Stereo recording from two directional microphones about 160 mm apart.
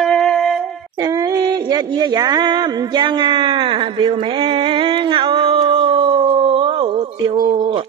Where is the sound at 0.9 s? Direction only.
25° right (ahead or behind).